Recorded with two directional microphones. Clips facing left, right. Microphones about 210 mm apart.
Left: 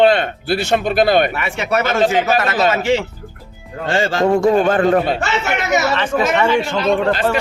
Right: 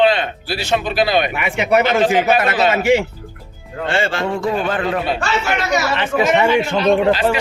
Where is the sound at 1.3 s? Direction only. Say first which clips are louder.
Right 3 dB; 15° right (ahead or behind).